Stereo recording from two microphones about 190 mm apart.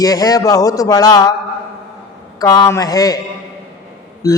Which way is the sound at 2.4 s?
20° left (ahead or behind).